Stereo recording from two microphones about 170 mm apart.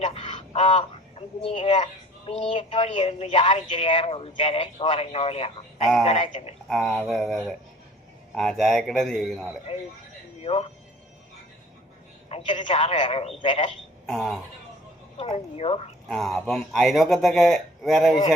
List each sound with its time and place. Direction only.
0.0 s a woman's voice: 35° left (ahead or behind)
6.7 s speech: centre (ahead or behind)
9.7 s a woman's voice: 35° left (ahead or behind)
12.3 s a woman's voice: 35° left (ahead or behind)
14.1 s speech: centre (ahead or behind)
15.2 s a woman's voice: 35° left (ahead or behind)
16.0 s speech: centre (ahead or behind)